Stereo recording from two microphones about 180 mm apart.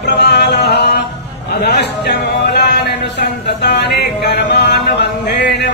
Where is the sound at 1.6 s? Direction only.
70° left (ahead or behind).